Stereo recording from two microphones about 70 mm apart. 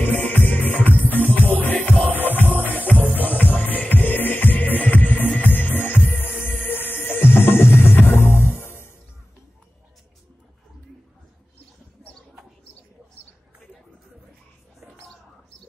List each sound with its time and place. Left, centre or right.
0.0 s music: left